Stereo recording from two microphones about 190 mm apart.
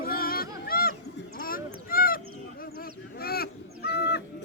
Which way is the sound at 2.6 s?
50° left (ahead or behind).